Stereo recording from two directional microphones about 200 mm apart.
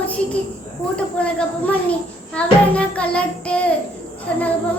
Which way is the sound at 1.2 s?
5° left (ahead or behind).